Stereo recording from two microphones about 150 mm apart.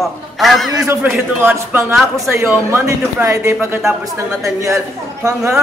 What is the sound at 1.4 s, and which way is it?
Speech, 15° right (ahead or behind).